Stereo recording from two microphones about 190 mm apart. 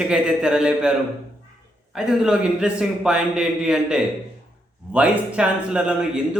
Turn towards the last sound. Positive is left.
turn(degrees=-5)  # may be behind; listen again after turning